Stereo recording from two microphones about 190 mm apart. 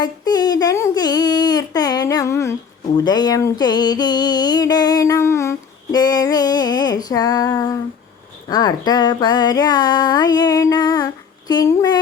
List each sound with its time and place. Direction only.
0.0 s speech: 20° left (ahead or behind)
3.0 s music: 20° left (ahead or behind)